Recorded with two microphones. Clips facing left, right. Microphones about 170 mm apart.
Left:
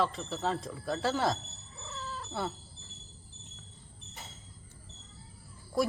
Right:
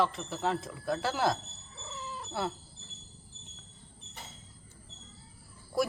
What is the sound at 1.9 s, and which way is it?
Cat, 15° right (ahead or behind).